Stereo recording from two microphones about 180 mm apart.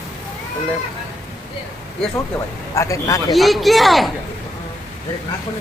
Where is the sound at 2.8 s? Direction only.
15° left (ahead or behind).